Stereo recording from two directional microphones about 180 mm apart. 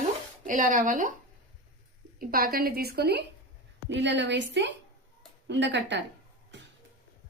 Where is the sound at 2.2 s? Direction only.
55° right (ahead or behind).